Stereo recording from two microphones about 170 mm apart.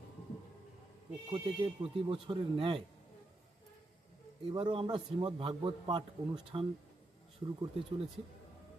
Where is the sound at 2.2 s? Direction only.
30° right (ahead or behind).